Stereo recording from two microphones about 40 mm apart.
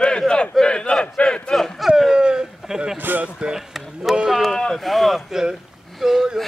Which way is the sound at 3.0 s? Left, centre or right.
Right.